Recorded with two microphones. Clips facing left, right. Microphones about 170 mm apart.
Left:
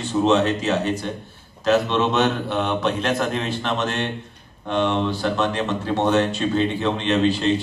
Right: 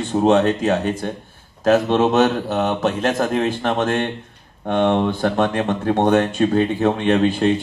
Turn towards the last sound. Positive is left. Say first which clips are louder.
# right 3 dB
turn(degrees=-50)  # may be behind; listen again after turning